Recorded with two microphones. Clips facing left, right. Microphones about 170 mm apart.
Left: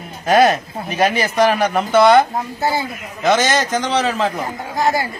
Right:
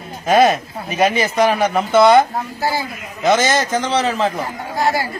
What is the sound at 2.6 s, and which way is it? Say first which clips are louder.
Speech: left 1 dB; 25° left (ahead or behind).